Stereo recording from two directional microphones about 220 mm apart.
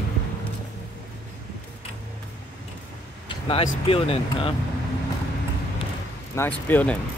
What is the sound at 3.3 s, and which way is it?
Speech, 25° left (ahead or behind).